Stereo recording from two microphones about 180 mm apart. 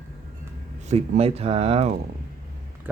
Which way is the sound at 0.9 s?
35° right (ahead or behind).